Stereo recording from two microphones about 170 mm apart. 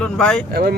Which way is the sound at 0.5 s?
65° right (ahead or behind).